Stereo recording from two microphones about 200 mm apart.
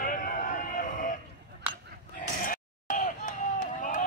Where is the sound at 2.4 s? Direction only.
40° left (ahead or behind).